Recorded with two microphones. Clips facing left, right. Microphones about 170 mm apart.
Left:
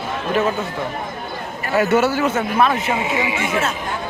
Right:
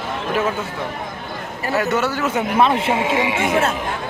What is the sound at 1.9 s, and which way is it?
Speech, 5° left (ahead or behind).